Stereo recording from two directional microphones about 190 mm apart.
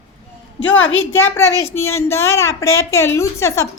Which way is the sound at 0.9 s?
90° left.